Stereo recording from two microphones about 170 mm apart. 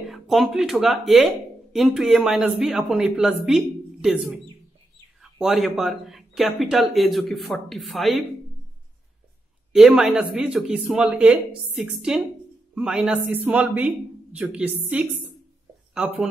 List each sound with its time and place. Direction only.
0.0 s speech: centre (ahead or behind)
9.7 s speech: 5° right (ahead or behind)